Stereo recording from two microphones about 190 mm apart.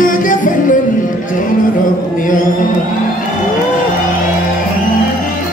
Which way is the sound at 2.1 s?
45° left (ahead or behind).